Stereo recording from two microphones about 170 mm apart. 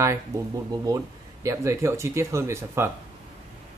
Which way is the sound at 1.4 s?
15° right (ahead or behind).